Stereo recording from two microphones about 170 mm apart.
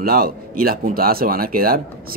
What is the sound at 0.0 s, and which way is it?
A man's voice, 60° right (ahead or behind).